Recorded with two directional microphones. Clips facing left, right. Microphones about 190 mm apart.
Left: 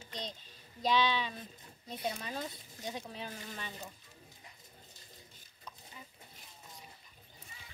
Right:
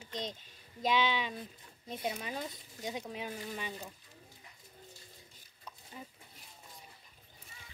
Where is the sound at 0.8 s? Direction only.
15° right (ahead or behind).